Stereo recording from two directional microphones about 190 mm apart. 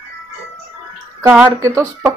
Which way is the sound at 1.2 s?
15° right (ahead or behind).